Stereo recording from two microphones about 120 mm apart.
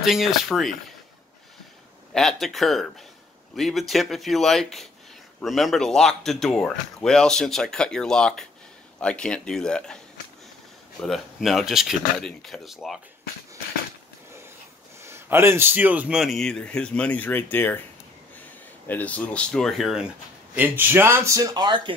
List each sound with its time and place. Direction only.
0.0 s speech: centre (ahead or behind)
2.4 s speech: centre (ahead or behind)
11.0 s speech: centre (ahead or behind)
15.0 s speech: 20° right (ahead or behind); by 17.7 s 15° left (ahead or behind)
18.9 s speech: 10° left (ahead or behind)
20.5 s a man's voice: 15° right (ahead or behind); by 21.9 s 40° right (ahead or behind)